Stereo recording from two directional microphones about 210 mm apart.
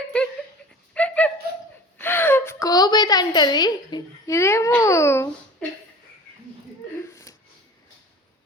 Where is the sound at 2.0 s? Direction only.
10° left (ahead or behind).